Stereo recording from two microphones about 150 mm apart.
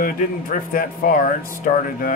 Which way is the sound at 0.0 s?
70° left (ahead or behind).